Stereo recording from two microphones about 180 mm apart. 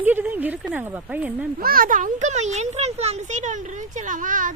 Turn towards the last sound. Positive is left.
turn(degrees=-45)  # may be behind; listen again after turning